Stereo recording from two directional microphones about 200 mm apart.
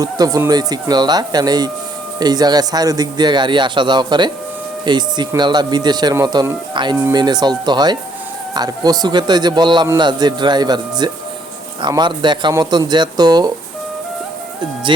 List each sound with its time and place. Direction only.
0.0 s speech: 15° right (ahead or behind)